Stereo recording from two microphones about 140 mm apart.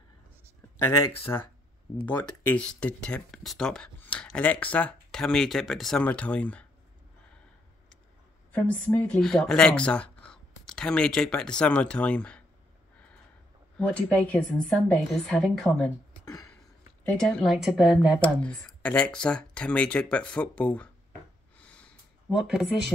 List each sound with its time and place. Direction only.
0.8 s speech: 15° left (ahead or behind)
8.5 s speech: 10° left (ahead or behind)
13.7 s a woman's voice: 5° left (ahead or behind)
16.3 s a sound: 25° left (ahead or behind)
17.0 s a woman's voice: 5° left (ahead or behind)
18.2 s speech: 10° left (ahead or behind)
21.5 s snort: 10° left (ahead or behind)
22.3 s a woman's voice: centre (ahead or behind)